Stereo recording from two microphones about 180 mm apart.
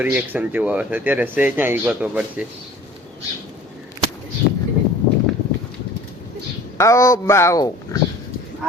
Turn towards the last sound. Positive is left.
turn(degrees=20)  # may be behind; listen again after turning